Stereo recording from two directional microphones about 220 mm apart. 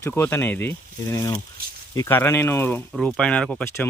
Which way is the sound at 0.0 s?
10° left (ahead or behind).